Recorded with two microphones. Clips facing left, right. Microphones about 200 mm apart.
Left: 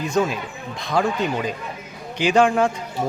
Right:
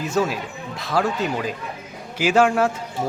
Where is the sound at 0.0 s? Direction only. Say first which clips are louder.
Left 1 dB; 5° right (ahead or behind).